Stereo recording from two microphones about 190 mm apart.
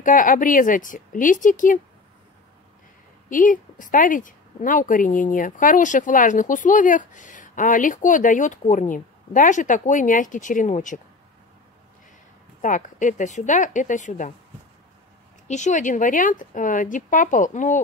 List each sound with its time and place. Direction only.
0.0 s a woman's voice: 45° left (ahead or behind)
3.3 s a woman's voice: 45° left (ahead or behind)
12.6 s a woman's voice: 40° left (ahead or behind)
15.4 s a woman's voice: 40° left (ahead or behind)